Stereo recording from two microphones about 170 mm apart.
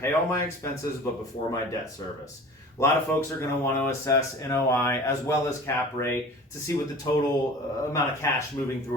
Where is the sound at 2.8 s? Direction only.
15° left (ahead or behind).